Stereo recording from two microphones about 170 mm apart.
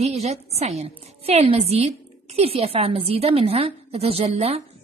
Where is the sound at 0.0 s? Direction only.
40° right (ahead or behind).